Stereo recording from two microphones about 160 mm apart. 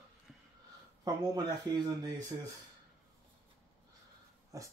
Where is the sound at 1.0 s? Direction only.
25° right (ahead or behind).